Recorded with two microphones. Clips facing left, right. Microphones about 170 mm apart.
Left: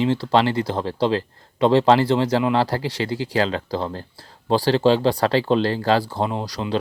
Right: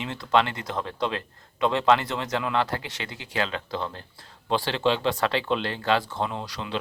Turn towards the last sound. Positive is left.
turn(degrees=35)  # may be behind; listen again after turning